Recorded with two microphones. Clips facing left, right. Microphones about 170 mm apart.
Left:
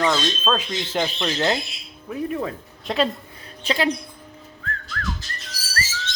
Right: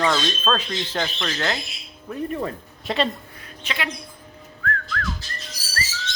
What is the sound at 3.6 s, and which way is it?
Speech, 35° left (ahead or behind).